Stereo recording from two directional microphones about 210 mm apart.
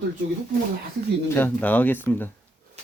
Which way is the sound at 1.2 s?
10° left (ahead or behind).